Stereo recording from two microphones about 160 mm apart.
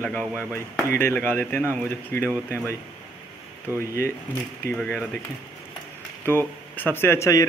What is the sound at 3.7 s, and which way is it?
Speech, 10° right (ahead or behind).